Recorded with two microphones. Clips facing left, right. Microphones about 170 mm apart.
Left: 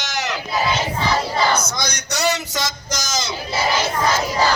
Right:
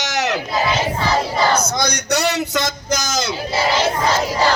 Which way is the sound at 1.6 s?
60° right (ahead or behind).